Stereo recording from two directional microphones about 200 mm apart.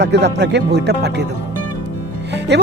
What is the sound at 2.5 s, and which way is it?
Speech, 55° right (ahead or behind).